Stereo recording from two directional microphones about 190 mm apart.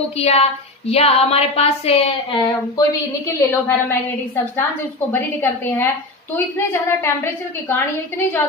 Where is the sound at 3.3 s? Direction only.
10° left (ahead or behind).